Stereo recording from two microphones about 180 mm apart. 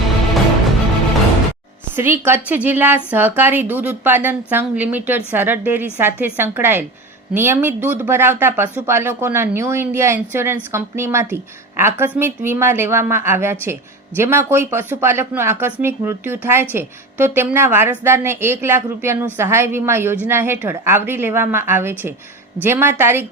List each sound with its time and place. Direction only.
2.0 s speech: 10° right (ahead or behind)